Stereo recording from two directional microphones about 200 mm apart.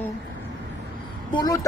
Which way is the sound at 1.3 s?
20° left (ahead or behind).